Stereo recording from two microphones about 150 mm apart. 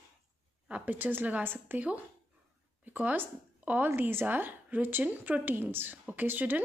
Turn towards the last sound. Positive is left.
turn(degrees=-10)  # may be behind; listen again after turning